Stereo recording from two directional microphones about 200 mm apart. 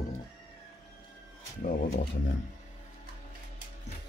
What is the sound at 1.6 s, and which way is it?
Speech, 45° left (ahead or behind).